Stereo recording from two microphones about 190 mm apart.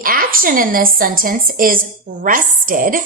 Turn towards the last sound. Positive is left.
turn(degrees=-45)  # may be behind; listen again after turning